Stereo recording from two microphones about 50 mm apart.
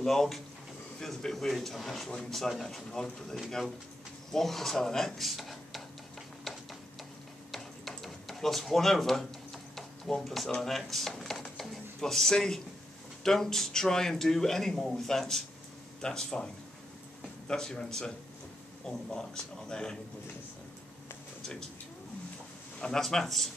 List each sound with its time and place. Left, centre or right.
0.0 s speech: centre
6.4 s a sound: centre
8.0 s drawer open or close: centre
10.6 s speech: centre
11.5 s a sound: centre
13.2 s speech: centre
17.5 s speech: centre
21.4 s a sound: centre
22.8 s speech: centre